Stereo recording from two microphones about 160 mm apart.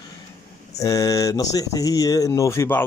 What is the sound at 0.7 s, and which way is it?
Speech, 20° left (ahead or behind).